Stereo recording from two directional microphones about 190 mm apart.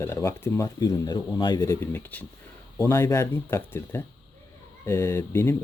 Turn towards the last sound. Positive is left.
turn(degrees=15)  # may be behind; listen again after turning